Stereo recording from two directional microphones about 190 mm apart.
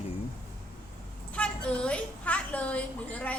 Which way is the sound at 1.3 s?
5° left (ahead or behind).